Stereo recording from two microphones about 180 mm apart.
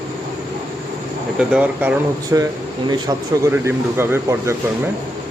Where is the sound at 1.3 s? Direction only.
5° right (ahead or behind).